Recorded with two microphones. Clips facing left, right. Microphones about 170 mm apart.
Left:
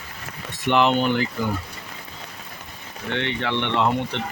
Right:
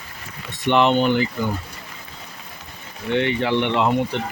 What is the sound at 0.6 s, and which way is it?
Speech, centre (ahead or behind).